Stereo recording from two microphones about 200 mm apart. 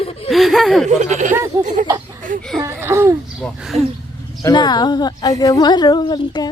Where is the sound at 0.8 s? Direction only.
35° right (ahead or behind).